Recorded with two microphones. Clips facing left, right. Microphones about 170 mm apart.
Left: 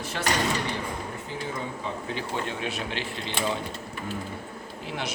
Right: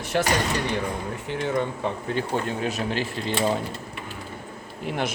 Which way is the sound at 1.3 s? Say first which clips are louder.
Right 10 dB; 65° right (ahead or behind).